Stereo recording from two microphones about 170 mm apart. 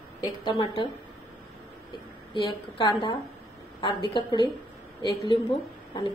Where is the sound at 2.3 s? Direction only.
25° left (ahead or behind).